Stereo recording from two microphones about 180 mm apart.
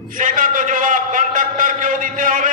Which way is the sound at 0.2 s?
50° right (ahead or behind).